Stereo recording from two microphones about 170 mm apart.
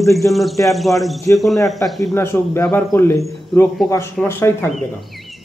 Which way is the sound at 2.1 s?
15° left (ahead or behind).